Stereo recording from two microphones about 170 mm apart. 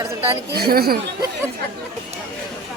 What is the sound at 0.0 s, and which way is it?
Speech, 15° right (ahead or behind).